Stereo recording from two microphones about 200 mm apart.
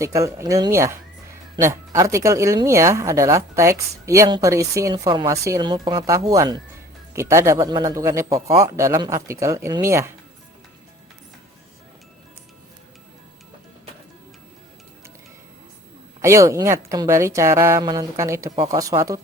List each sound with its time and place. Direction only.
0.0 s speech: 15° right (ahead or behind)
16.2 s speech: 15° right (ahead or behind)